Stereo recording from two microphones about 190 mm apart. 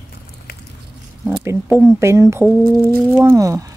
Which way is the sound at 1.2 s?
10° right (ahead or behind).